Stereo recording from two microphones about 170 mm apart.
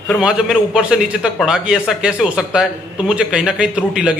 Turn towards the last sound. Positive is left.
turn(degrees=-5)  # may be behind; listen again after turning